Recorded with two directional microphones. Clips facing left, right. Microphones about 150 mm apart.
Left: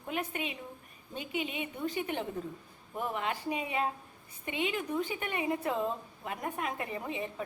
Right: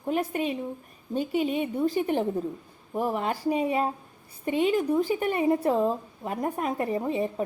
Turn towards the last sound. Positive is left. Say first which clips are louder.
# right 10 dB
turn(degrees=-40)  # may be behind; listen again after turning